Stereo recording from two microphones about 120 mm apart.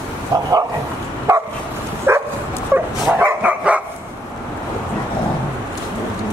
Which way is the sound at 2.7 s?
15° right (ahead or behind).